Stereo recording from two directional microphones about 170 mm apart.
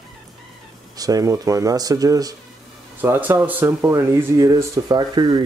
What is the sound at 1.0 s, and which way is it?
A man's voice, 20° right (ahead or behind).